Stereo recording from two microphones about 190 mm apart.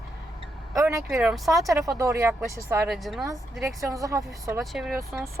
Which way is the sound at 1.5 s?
Centre (ahead or behind).